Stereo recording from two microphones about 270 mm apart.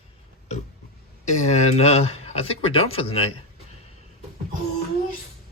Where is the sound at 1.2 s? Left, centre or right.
Left.